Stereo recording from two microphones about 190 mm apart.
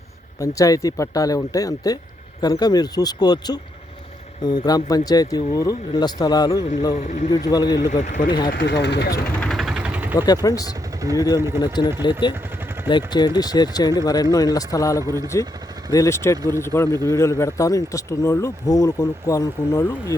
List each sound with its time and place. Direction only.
0.3 s speech: 15° left (ahead or behind)
6.9 s speech: 40° left (ahead or behind)
7.3 s speech: 20° left (ahead or behind)
7.9 s speech: 40° left (ahead or behind)
8.4 s speech: 65° left (ahead or behind)
9.4 s vehicle: centre (ahead or behind)
10.2 s speech: 20° left (ahead or behind)
11.3 s speech: 15° right (ahead or behind)
11.6 s speech: 20° left (ahead or behind)
12.9 s speech: 25° left (ahead or behind)